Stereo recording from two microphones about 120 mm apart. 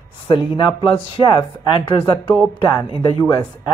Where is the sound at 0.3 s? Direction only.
40° left (ahead or behind).